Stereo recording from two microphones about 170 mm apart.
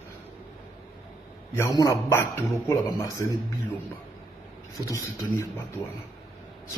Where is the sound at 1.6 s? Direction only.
20° left (ahead or behind).